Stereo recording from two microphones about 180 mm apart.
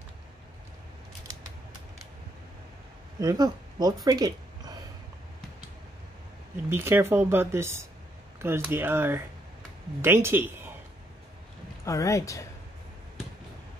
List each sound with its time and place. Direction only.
3.2 s speech: 20° right (ahead or behind)
6.5 s speech: 15° right (ahead or behind)
11.8 s speech: 20° left (ahead or behind)